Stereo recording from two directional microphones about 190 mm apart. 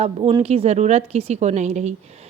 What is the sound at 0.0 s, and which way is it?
A woman's voice, 25° right (ahead or behind).